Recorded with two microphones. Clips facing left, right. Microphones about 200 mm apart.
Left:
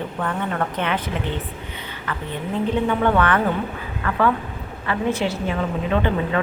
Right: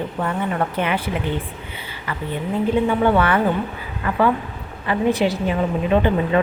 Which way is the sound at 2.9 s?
10° right (ahead or behind).